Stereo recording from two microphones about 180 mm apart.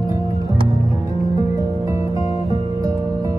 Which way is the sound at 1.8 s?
20° right (ahead or behind).